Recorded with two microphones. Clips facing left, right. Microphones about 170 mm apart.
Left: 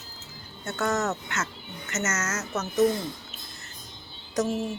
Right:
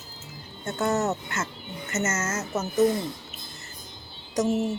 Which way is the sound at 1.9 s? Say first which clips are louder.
Right 2 dB; 30° right (ahead or behind).